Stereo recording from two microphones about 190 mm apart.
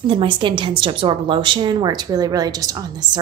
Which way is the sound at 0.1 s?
25° right (ahead or behind).